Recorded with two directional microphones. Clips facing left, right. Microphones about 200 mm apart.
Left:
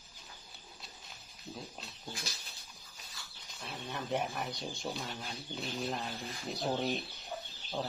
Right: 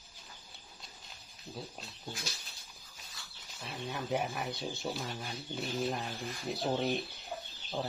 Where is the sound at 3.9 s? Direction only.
Centre (ahead or behind).